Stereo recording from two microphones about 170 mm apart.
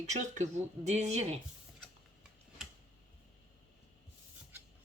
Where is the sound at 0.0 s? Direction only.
45° right (ahead or behind).